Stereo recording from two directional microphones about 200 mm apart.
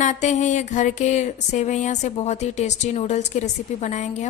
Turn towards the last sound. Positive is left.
turn(degrees=35)  # may be behind; listen again after turning